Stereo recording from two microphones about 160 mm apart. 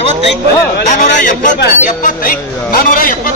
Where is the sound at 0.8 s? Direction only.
50° left (ahead or behind).